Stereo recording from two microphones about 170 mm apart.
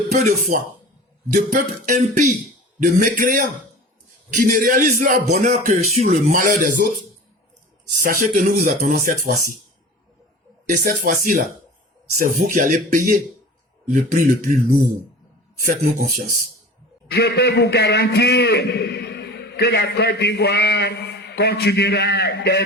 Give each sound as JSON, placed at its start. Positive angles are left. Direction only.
{"t": 0.1, "sound": "speech", "side_deg": -50}
{"t": 6.3, "sound": "speech", "side_deg": -55}
{"t": 8.0, "sound": "speech", "side_deg": -50}
{"t": 10.7, "sound": "speech", "side_deg": -50}
{"t": 15.6, "sound": "speech", "side_deg": -55}
{"t": 17.1, "sound": "a man's voice", "side_deg": 70}